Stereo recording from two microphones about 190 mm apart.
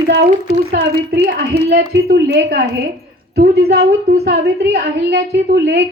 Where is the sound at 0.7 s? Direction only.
55° right (ahead or behind).